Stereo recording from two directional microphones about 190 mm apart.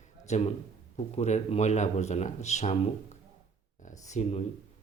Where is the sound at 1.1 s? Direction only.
35° left (ahead or behind).